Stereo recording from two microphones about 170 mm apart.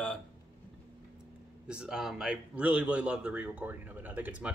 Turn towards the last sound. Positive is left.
turn(degrees=-10)  # may be behind; listen again after turning